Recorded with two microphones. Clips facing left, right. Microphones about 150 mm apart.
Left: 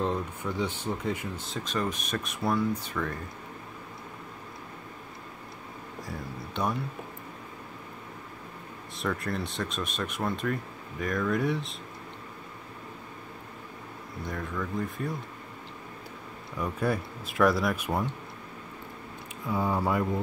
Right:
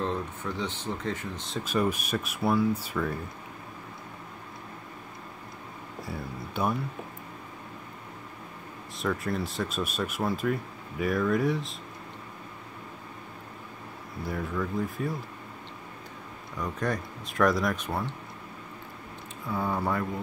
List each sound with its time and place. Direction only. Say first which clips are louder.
0.0 s speech: left 1 dB; 10° left (ahead or behind)
1.5 s speech: right 5 dB; 5° right (ahead or behind)
6.0 s speech: right 2 dB; 5° right (ahead or behind)
8.9 s speech: right 2 dB; centre (ahead or behind)
14.2 s speech: right 3 dB; 5° right (ahead or behind)
16.5 s speech: left 2 dB; 10° left (ahead or behind)
19.5 s speech: left 2 dB; 10° left (ahead or behind)